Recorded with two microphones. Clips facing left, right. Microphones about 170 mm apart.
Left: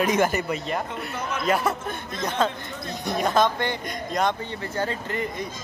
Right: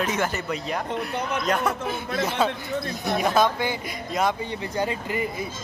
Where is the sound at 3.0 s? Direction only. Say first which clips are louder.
Even; 5° right (ahead or behind).